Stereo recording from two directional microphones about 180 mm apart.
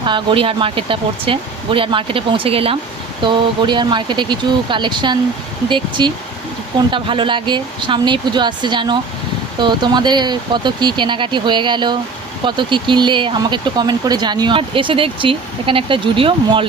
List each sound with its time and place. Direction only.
0.0 s speech: 25° right (ahead or behind)